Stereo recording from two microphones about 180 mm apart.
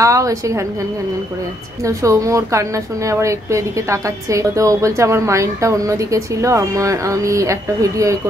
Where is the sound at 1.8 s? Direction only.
15° right (ahead or behind).